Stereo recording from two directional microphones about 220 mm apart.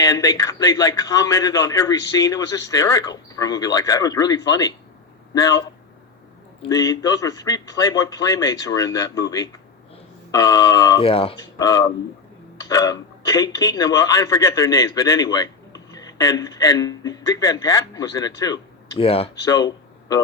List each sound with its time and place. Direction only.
0.0 s a man's voice: 15° left (ahead or behind)